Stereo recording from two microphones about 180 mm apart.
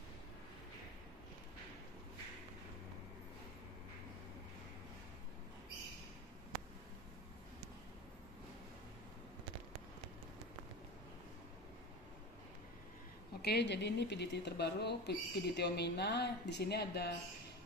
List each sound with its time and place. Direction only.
13.4 s speech: 65° left (ahead or behind)